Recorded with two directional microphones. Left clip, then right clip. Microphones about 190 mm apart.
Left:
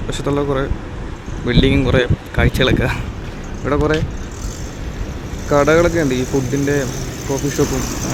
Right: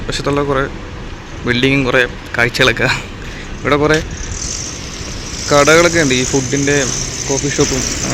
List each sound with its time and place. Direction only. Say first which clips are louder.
0.1 s speech: right 3 dB; 5° left (ahead or behind)
5.5 s speech: right 4 dB; 5° right (ahead or behind)
6.2 s speech: right 3 dB; 55° left (ahead or behind)